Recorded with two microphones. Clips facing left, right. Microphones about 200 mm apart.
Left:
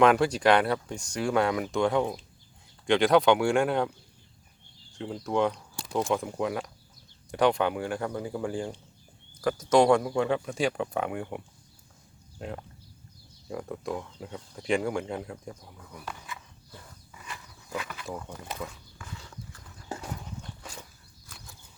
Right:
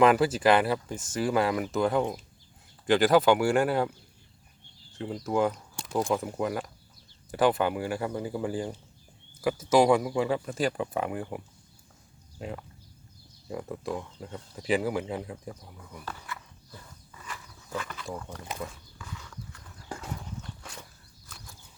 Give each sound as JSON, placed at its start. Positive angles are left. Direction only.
{"t": 0.0, "sound": "speech", "side_deg": -5}
{"t": 4.9, "sound": "speech", "side_deg": 0}
{"t": 16.0, "sound": "a sound", "side_deg": 15}
{"t": 17.2, "sound": "speech", "side_deg": 15}
{"t": 19.1, "sound": "clip-clop", "side_deg": 30}